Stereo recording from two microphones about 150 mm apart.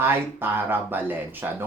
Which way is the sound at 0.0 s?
15° right (ahead or behind).